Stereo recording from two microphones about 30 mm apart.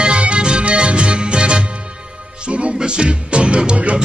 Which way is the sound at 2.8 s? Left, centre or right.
Right.